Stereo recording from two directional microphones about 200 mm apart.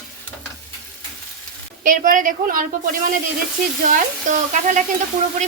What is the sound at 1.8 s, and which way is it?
A woman's voice, 45° right (ahead or behind).